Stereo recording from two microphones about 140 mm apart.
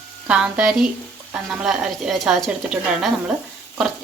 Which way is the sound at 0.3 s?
5° right (ahead or behind).